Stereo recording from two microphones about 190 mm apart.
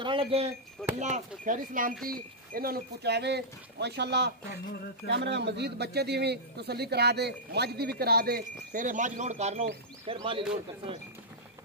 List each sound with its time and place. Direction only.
0.0 s speech: 30° right (ahead or behind)